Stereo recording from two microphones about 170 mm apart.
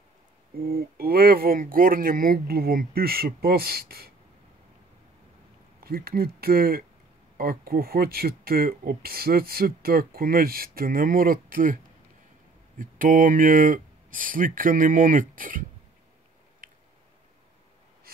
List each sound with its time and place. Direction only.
0.6 s speech: 60° right (ahead or behind)
5.9 s speech: 60° right (ahead or behind)